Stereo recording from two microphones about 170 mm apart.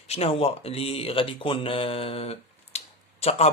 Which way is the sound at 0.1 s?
35° left (ahead or behind).